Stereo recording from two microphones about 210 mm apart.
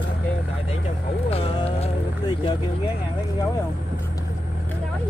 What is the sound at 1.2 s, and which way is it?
Music, 25° left (ahead or behind).